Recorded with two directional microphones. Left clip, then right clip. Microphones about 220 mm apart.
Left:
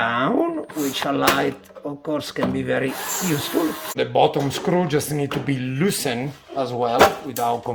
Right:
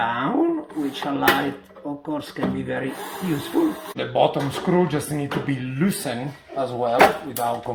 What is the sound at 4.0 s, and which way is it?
Speech, 55° left (ahead or behind).